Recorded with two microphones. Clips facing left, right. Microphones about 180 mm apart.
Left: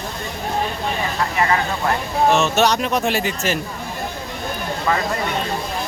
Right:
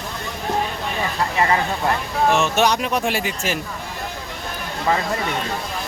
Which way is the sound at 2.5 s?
10° right (ahead or behind).